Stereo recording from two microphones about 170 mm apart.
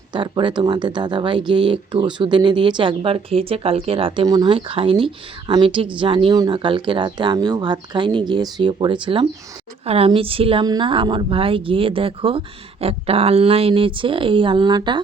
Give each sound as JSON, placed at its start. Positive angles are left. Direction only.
{"t": 0.1, "sound": "a woman's voice", "side_deg": -30}